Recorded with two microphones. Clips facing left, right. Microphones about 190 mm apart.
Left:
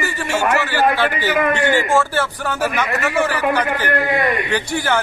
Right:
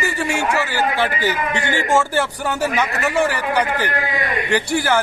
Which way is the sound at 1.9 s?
15° right (ahead or behind).